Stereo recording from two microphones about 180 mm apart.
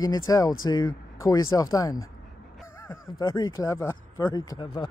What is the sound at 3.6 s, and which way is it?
Speech, 15° left (ahead or behind).